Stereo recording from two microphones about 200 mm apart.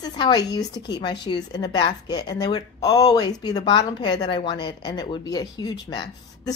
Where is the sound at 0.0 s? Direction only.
20° left (ahead or behind).